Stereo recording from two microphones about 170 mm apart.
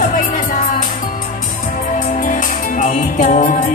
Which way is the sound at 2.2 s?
50° left (ahead or behind).